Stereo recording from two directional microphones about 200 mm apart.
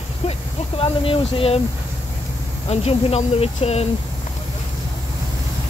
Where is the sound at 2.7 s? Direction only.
30° left (ahead or behind).